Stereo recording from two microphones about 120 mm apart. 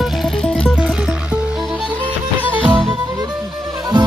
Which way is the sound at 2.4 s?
15° right (ahead or behind).